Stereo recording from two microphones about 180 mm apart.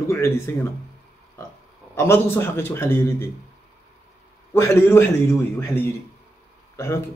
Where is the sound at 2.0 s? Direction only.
15° left (ahead or behind).